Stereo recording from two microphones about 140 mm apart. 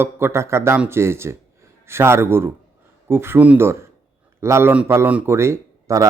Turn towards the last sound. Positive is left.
turn(degrees=-20)  # may be behind; listen again after turning